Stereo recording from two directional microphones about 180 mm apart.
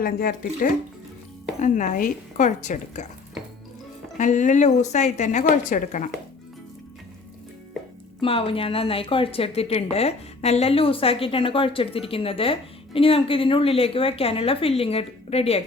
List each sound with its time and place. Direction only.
0.0 s speech: 50° left (ahead or behind)
4.2 s speech: 45° left (ahead or behind)
8.2 s speech: 30° left (ahead or behind)